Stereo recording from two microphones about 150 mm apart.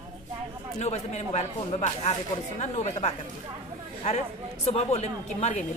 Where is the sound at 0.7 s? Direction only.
45° left (ahead or behind).